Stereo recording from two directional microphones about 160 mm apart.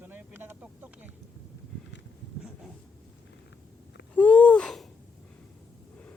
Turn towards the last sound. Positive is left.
turn(degrees=5)  # may be behind; listen again after turning